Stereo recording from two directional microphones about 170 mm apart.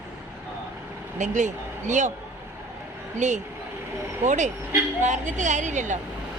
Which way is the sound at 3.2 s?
45° right (ahead or behind).